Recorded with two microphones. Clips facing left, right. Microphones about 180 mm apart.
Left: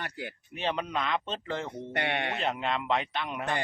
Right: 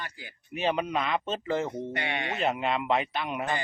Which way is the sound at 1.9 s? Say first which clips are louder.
Left 1 dB; 60° left (ahead or behind).